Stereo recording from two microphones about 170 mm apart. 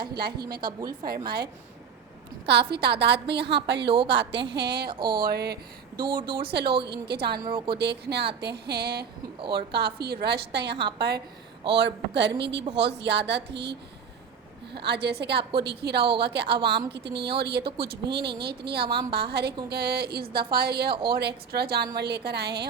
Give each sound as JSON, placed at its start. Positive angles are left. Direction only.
{"t": 0.2, "sound": "a woman's voice", "side_deg": -65}
{"t": 0.6, "sound": "a woman's voice", "side_deg": -20}
{"t": 1.0, "sound": "speech", "side_deg": -65}
{"t": 2.5, "sound": "a woman's voice", "side_deg": -75}
{"t": 4.4, "sound": "a woman's voice", "side_deg": -75}
{"t": 7.4, "sound": "a woman's voice", "side_deg": -30}
{"t": 7.8, "sound": "a woman's voice", "side_deg": -80}
{"t": 14.8, "sound": "a woman's voice", "side_deg": -75}